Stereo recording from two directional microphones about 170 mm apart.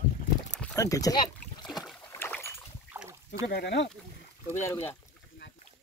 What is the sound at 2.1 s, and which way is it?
Boat, 15° left (ahead or behind).